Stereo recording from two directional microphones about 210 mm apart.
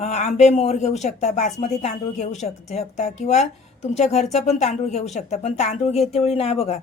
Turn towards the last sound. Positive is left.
turn(degrees=30)  # may be behind; listen again after turning